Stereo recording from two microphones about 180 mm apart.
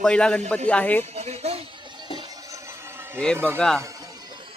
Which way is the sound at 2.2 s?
20° right (ahead or behind).